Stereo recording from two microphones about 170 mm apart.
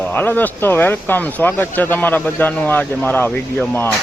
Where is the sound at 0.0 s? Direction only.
10° left (ahead or behind).